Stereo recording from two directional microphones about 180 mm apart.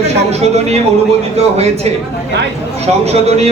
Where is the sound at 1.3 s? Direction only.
35° right (ahead or behind).